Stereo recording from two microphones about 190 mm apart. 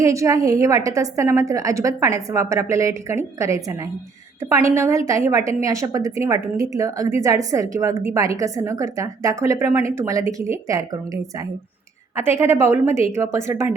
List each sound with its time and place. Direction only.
0.0 s a woman's voice: 15° right (ahead or behind)